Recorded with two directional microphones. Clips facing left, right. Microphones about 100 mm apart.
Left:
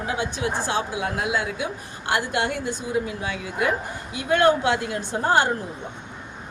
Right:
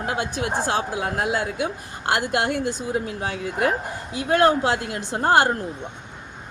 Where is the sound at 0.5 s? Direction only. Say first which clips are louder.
Right 2 dB; 40° right (ahead or behind).